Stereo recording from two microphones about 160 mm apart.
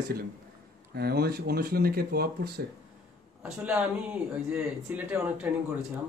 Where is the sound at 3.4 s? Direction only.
10° right (ahead or behind).